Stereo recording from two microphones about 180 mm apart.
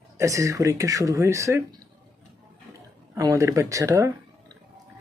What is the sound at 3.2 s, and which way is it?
Speech, 20° right (ahead or behind).